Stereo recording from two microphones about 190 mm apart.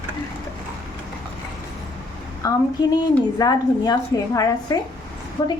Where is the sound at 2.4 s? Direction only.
20° left (ahead or behind).